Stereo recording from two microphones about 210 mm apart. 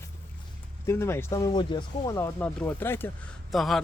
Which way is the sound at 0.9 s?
10° left (ahead or behind).